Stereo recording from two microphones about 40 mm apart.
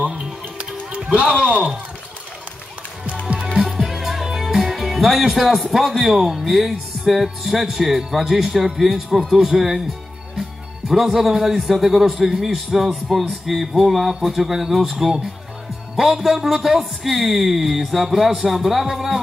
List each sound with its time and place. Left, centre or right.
0.1 s music: right
3.5 s music: centre
5.7 s speech: centre
10.9 s speech: centre